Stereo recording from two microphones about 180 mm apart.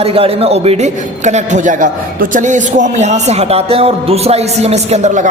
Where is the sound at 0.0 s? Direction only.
30° right (ahead or behind).